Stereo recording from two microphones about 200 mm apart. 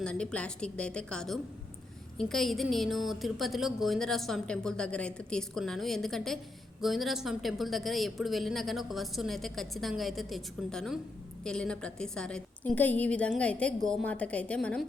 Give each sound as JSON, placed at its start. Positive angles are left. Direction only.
{"t": 0.0, "sound": "a woman's voice", "side_deg": 5}